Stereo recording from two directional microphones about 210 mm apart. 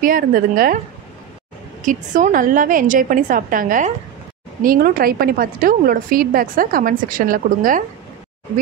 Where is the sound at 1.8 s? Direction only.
35° right (ahead or behind).